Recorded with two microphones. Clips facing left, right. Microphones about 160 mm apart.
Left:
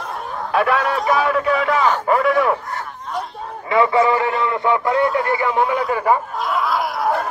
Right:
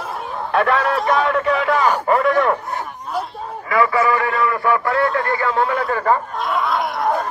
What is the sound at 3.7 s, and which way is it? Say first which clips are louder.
A man's voice: left 2 dB; 25° left (ahead or behind).